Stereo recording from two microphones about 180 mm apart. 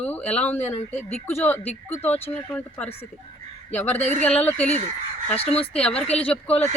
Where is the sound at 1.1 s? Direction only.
15° left (ahead or behind).